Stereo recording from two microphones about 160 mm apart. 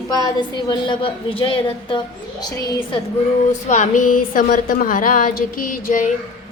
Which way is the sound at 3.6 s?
50° left (ahead or behind).